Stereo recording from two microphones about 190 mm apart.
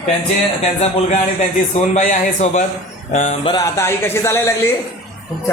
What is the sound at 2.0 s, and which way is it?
A man's voice, 40° left (ahead or behind).